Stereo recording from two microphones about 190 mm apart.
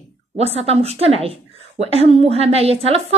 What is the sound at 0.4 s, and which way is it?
A woman's voice, 35° right (ahead or behind).